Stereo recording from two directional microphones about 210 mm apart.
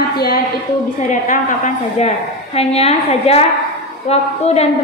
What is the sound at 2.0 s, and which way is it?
A woman's voice, 30° left (ahead or behind).